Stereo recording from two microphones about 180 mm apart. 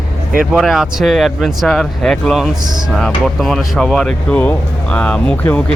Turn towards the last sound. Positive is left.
turn(degrees=5)  # may be behind; listen again after turning